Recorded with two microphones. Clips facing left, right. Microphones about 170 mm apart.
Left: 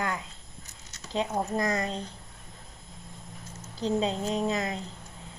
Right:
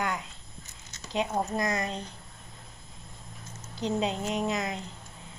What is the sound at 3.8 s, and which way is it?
A woman's voice, 30° left (ahead or behind).